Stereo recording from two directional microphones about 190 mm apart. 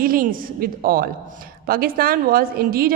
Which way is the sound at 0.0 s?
50° right (ahead or behind).